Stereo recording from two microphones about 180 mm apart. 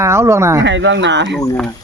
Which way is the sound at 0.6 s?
85° right.